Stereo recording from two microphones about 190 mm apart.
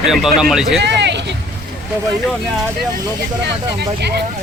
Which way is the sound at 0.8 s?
65° right (ahead or behind).